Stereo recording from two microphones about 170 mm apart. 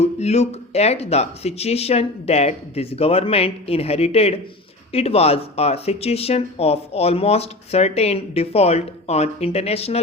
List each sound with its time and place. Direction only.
0.0 s speech: 40° left (ahead or behind)